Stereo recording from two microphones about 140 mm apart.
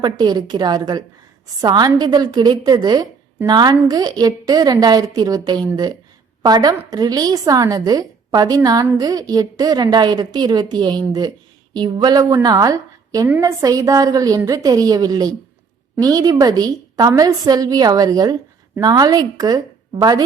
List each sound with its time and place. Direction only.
0.0 s a woman's voice: 30° right (ahead or behind)